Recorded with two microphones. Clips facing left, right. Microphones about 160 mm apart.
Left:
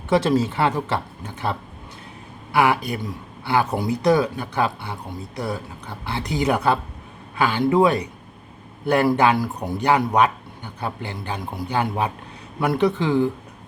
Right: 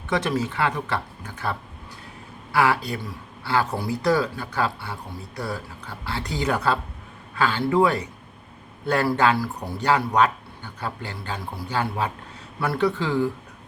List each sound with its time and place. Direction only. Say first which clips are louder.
0.1 s speech: left 6 dB; 30° left (ahead or behind)